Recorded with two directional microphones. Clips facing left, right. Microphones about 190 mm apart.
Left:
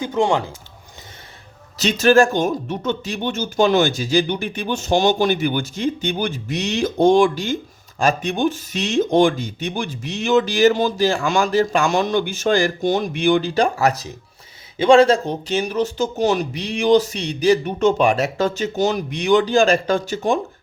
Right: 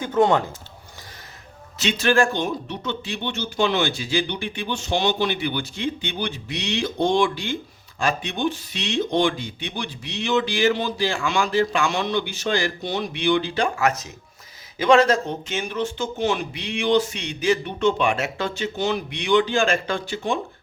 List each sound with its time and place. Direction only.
0.0 s speech: 10° left (ahead or behind)
1.8 s speech: 40° left (ahead or behind)